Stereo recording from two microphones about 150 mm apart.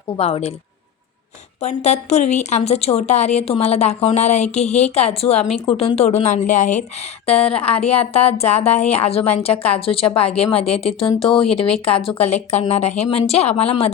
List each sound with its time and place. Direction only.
0.2 s speech: 40° left (ahead or behind)
1.6 s speech: 50° left (ahead or behind)